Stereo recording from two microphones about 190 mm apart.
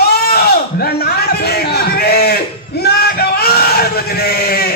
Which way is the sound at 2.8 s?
55° left (ahead or behind).